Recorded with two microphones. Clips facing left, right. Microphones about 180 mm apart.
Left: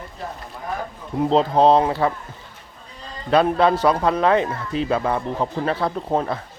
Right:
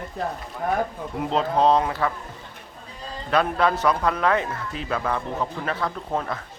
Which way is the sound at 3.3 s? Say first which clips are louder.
Left 5 dB; 30° left (ahead or behind).